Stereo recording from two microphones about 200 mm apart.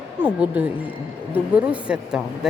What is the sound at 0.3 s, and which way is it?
Speech, 5° right (ahead or behind).